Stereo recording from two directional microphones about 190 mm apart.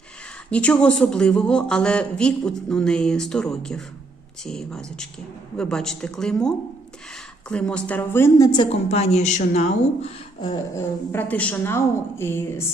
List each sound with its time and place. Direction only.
0.5 s a man's voice: 5° left (ahead or behind)
8.5 s a woman's voice: 35° left (ahead or behind)
10.4 s a sound: 25° left (ahead or behind)
11.1 s a woman's voice: 10° left (ahead or behind)